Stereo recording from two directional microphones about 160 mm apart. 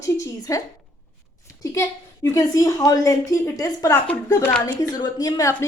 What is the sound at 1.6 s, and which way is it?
A woman's voice, 20° left (ahead or behind).